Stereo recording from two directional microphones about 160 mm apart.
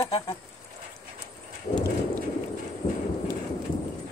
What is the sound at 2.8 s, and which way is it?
Train, 40° left (ahead or behind).